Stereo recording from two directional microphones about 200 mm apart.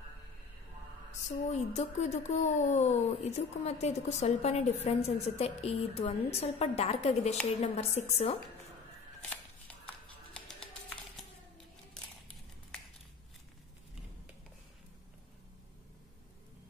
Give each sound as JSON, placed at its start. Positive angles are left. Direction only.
{"t": 1.5, "sound": "speech", "side_deg": 35}